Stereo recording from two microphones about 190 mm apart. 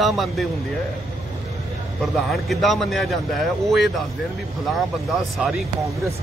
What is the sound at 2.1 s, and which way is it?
A man's voice, centre (ahead or behind).